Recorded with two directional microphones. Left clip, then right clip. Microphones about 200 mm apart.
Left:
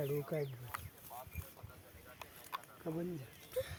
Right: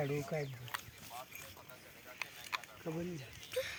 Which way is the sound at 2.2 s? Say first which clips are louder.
Right 5 dB; 25° left (ahead or behind).